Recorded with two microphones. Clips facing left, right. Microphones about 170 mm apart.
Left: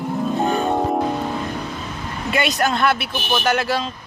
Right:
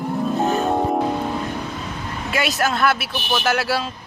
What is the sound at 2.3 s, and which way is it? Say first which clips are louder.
Speech: left 2 dB; centre (ahead or behind).